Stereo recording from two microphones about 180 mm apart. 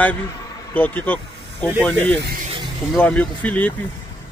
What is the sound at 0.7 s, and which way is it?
Speech, 10° left (ahead or behind).